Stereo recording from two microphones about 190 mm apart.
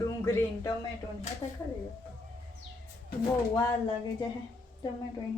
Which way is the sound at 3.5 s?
20° left (ahead or behind).